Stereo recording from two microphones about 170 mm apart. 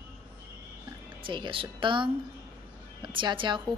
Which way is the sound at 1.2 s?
30° right (ahead or behind).